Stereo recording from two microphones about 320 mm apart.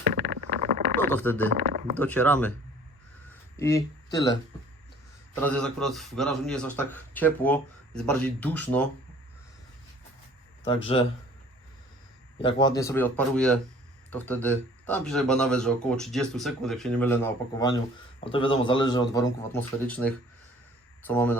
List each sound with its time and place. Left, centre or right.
0.0 s vehicle: right
0.9 s a man's voice: centre
3.6 s speech: centre
5.4 s a man's voice: centre
12.4 s a man's voice: centre